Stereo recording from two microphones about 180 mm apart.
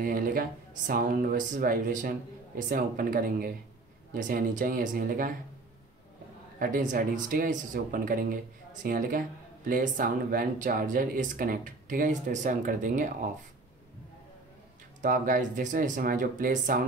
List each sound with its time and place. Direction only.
0.0 s speech: 50° right (ahead or behind)
6.6 s speech: 45° right (ahead or behind)
15.0 s speech: 45° right (ahead or behind)